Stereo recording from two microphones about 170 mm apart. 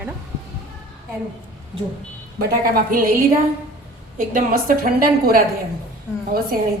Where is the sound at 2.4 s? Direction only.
60° right (ahead or behind).